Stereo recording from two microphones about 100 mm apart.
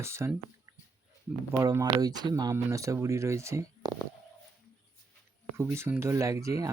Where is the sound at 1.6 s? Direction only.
35° right (ahead or behind).